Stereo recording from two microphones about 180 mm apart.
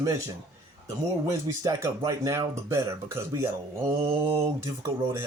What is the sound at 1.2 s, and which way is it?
Speech, 15° right (ahead or behind).